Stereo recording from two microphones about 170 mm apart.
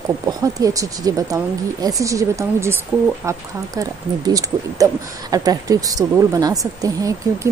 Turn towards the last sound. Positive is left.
turn(degrees=-20)  # may be behind; listen again after turning